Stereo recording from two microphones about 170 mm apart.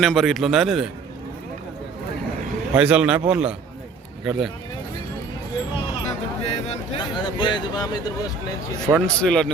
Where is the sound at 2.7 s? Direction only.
5° right (ahead or behind).